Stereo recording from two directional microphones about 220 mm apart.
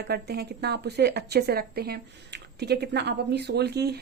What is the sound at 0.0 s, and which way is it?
A woman's voice, 45° right (ahead or behind).